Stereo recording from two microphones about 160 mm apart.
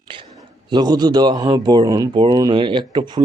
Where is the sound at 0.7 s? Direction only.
25° right (ahead or behind).